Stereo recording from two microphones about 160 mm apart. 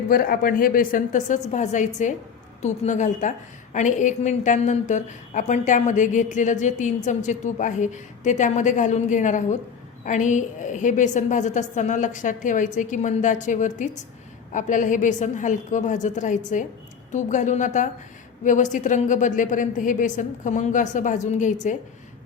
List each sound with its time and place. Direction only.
0.1 s a woman's voice: 65° left (ahead or behind)